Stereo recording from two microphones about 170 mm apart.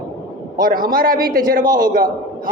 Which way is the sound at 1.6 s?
25° right (ahead or behind).